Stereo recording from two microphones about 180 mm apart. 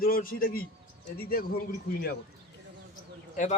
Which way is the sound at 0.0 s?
55° left (ahead or behind).